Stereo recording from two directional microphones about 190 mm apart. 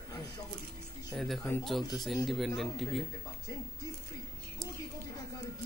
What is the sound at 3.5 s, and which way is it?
Speech, 20° left (ahead or behind).